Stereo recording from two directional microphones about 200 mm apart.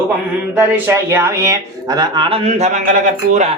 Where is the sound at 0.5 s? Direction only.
10° right (ahead or behind); by 2.9 s 35° right (ahead or behind).